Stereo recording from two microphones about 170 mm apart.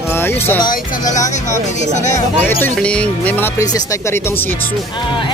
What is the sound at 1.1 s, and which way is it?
Speech, 45° left (ahead or behind).